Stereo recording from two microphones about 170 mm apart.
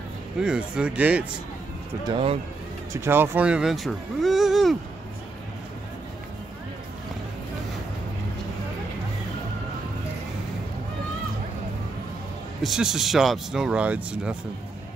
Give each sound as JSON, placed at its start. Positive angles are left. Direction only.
{"t": 0.4, "sound": "speech", "side_deg": -5}
{"t": 2.0, "sound": "speech", "side_deg": -30}
{"t": 2.9, "sound": "speech", "side_deg": -15}
{"t": 12.6, "sound": "speech", "side_deg": -5}